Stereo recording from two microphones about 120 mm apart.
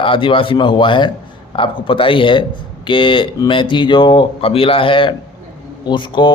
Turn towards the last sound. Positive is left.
turn(degrees=40)  # may be behind; listen again after turning